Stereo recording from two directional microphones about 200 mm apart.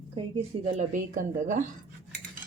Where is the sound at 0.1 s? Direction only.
30° right (ahead or behind).